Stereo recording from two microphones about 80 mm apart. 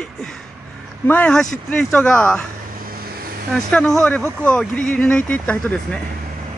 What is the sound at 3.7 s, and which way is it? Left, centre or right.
Speech, centre.